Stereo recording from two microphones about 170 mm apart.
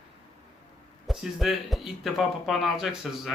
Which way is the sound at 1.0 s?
Centre (ahead or behind).